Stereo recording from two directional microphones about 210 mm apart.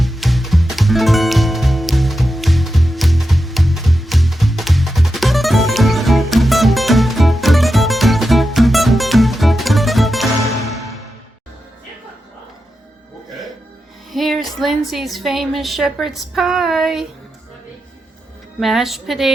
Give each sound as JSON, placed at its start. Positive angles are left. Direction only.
{"t": 0.0, "sound": "music", "side_deg": 0}
{"t": 14.1, "sound": "music", "side_deg": 0}
{"t": 14.6, "sound": "a woman's voice", "side_deg": 0}
{"t": 18.6, "sound": "a woman's voice", "side_deg": 0}